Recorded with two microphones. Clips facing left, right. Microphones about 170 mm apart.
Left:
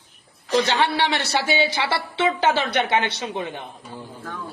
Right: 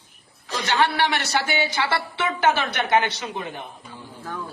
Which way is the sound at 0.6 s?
25° left (ahead or behind).